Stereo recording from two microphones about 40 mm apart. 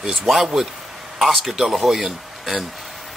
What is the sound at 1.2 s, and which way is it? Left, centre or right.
Speech, centre.